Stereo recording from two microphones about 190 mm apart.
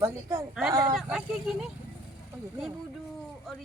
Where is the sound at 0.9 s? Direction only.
Centre (ahead or behind).